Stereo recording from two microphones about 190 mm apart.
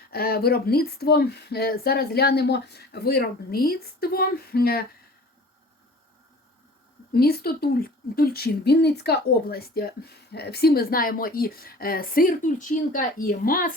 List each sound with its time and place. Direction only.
0.1 s speech: 55° left (ahead or behind)
7.1 s a woman's voice: 55° left (ahead or behind)